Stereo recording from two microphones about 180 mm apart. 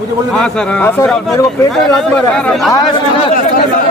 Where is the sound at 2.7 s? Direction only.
20° left (ahead or behind).